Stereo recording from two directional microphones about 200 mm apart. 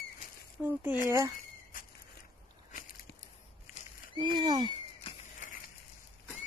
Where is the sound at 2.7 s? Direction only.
45° left (ahead or behind).